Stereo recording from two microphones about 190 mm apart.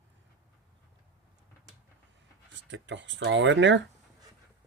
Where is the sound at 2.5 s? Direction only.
75° right (ahead or behind).